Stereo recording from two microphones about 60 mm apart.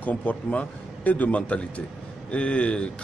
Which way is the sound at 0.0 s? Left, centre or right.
Left.